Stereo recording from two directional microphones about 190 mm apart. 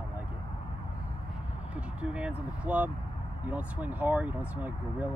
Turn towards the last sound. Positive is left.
turn(degrees=-10)  # may be behind; listen again after turning